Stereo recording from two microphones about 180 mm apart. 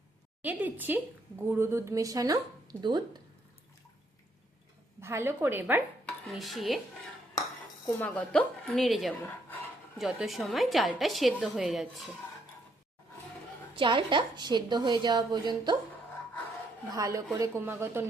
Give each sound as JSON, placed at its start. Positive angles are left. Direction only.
{"t": 0.4, "sound": "a woman's voice", "side_deg": -10}
{"t": 4.9, "sound": "speech", "side_deg": -15}
{"t": 6.3, "sound": "a woman's voice", "side_deg": 0}
{"t": 7.9, "sound": "a woman's voice", "side_deg": 10}
{"t": 13.7, "sound": "a woman's voice", "side_deg": -25}
{"t": 16.9, "sound": "a woman's voice", "side_deg": -20}